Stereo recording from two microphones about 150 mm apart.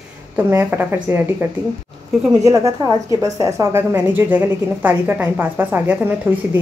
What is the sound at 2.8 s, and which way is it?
A woman's voice, 25° right (ahead or behind).